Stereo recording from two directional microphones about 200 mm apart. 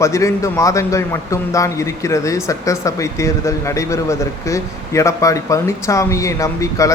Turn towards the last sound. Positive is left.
turn(degrees=15)  # may be behind; listen again after turning